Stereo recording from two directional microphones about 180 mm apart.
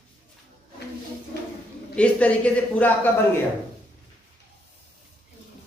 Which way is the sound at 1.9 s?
5° left (ahead or behind).